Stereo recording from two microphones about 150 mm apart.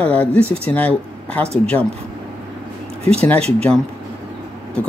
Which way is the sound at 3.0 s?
40° right (ahead or behind).